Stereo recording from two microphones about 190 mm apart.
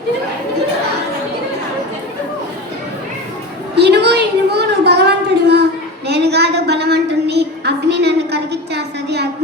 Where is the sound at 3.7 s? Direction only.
60° right (ahead or behind).